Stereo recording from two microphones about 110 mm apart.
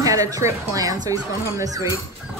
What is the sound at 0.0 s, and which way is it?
Speech, 30° right (ahead or behind).